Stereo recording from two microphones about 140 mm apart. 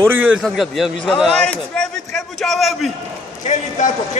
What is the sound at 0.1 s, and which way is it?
Speech, 15° right (ahead or behind).